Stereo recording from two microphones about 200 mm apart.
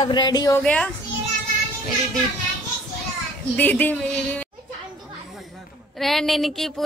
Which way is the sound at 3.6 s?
10° left (ahead or behind).